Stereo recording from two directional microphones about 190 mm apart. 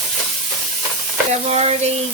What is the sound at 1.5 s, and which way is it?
Speech, 35° right (ahead or behind).